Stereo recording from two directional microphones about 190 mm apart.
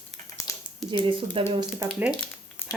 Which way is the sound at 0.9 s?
25° right (ahead or behind).